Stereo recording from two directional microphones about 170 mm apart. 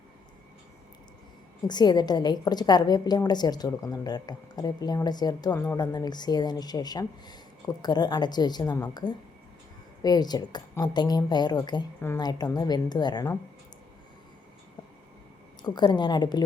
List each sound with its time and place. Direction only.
1.6 s a woman's voice: 25° left (ahead or behind)
11.9 s speech: 15° left (ahead or behind)
12.2 s a woman's voice: 25° left (ahead or behind)
15.6 s a woman's voice: 25° left (ahead or behind)